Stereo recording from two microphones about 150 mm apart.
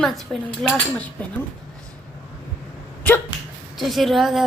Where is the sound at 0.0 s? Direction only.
Centre (ahead or behind).